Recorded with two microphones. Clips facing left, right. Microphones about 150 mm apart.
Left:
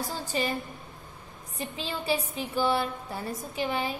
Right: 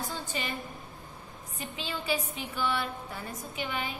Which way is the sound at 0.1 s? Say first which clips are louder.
Left 6 dB; 40° left (ahead or behind).